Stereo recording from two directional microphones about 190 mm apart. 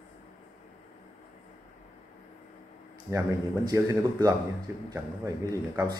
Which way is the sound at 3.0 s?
15° right (ahead or behind).